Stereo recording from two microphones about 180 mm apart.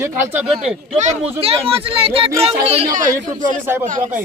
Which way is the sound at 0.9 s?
40° right (ahead or behind).